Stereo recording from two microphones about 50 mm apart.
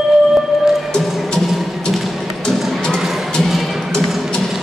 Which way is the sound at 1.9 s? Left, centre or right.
Centre.